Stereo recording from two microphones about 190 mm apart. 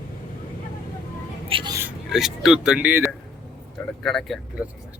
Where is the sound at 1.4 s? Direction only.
30° right (ahead or behind).